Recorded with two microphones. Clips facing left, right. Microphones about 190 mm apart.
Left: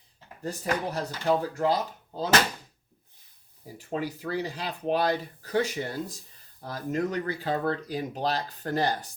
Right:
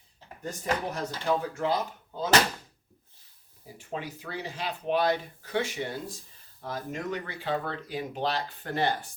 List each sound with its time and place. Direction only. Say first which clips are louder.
0.4 s speech: left 1 dB; 35° left (ahead or behind)
3.8 s speech: left 5 dB; 40° left (ahead or behind)